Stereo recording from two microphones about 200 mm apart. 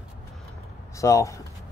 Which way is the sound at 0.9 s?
15° left (ahead or behind).